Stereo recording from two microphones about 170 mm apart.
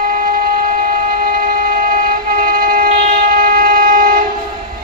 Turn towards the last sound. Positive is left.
turn(degrees=-55)  # may be behind; listen again after turning